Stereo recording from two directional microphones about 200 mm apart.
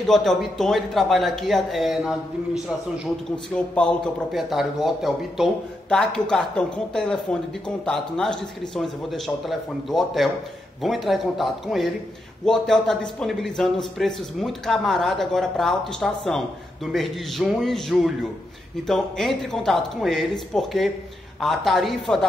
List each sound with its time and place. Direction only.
0.0 s speech: centre (ahead or behind)